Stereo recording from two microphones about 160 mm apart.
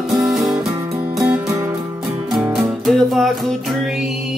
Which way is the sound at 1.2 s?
15° right (ahead or behind).